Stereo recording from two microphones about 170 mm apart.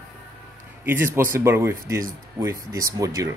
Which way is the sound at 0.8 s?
15° right (ahead or behind).